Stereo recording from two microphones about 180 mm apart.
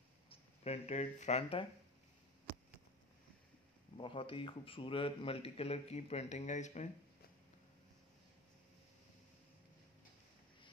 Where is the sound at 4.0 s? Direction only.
30° left (ahead or behind).